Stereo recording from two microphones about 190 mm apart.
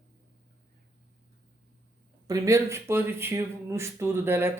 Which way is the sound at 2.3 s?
15° right (ahead or behind).